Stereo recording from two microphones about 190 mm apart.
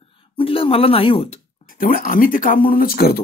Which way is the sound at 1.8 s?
50° left (ahead or behind).